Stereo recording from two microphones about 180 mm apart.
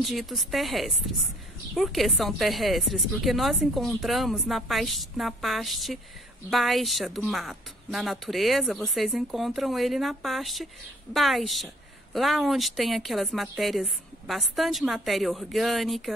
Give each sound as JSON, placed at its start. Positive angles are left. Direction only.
{"t": 0.0, "sound": "a woman's voice", "side_deg": 0}